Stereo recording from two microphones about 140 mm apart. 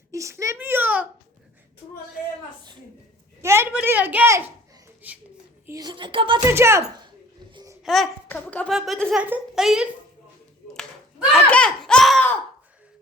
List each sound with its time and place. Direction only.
0.1 s a sound: 20° right (ahead or behind)
3.4 s a sound: 20° right (ahead or behind)
3.7 s a woman's voice: 10° right (ahead or behind)
5.6 s a woman's voice: 25° right (ahead or behind)
6.4 s speech: 20° right (ahead or behind)
7.5 s babbling: 25° right (ahead or behind)
7.9 s a woman's voice: centre (ahead or behind)
8.3 s speech: 10° left (ahead or behind)
8.7 s a woman's voice: centre (ahead or behind)
11.3 s a sound: 5° left (ahead or behind)